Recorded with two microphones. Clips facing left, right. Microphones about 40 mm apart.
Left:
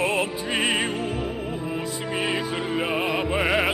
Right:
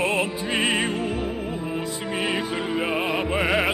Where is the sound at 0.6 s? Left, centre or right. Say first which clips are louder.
Right 1 dB; centre.